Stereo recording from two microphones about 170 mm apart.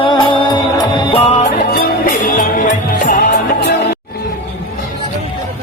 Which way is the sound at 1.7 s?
60° left (ahead or behind).